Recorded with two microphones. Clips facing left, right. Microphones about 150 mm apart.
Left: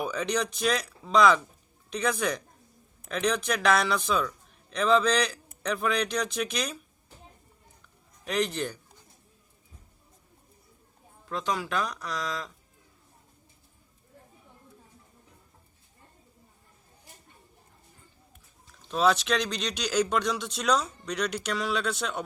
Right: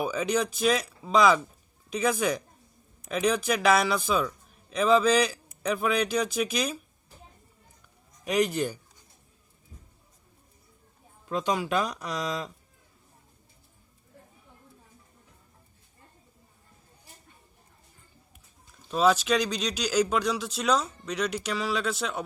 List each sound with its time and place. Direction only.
0.0 s speech: 5° right (ahead or behind)
8.2 s speech: 10° right (ahead or behind)
11.3 s speech: 15° right (ahead or behind)
18.9 s speech: 5° right (ahead or behind)